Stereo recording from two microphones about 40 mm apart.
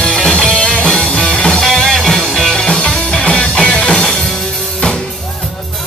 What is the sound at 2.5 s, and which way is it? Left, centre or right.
Music, left.